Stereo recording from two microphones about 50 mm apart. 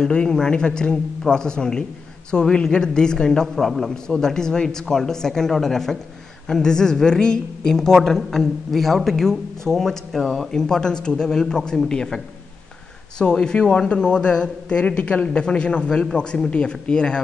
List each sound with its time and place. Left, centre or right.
0.0 s a woman's voice: centre
10.5 s a woman's voice: centre
13.2 s a man's voice: centre